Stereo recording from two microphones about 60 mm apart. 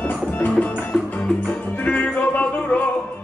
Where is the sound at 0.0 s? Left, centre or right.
Left.